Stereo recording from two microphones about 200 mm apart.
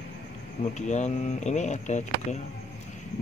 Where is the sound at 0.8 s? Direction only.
35° left (ahead or behind).